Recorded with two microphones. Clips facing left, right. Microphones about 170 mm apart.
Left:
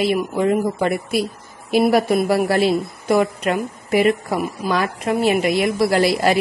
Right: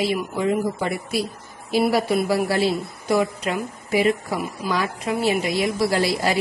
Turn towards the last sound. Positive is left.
turn(degrees=65)  # may be behind; listen again after turning